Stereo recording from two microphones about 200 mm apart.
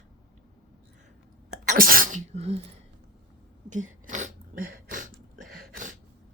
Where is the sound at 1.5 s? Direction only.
40° right (ahead or behind).